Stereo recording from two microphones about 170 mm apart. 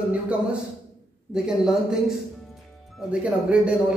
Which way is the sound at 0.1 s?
5° right (ahead or behind).